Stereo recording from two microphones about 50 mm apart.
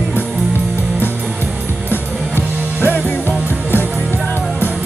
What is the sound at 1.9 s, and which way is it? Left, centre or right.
Music, left.